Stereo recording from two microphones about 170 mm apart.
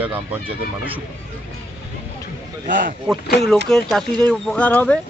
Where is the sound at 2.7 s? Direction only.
55° right (ahead or behind).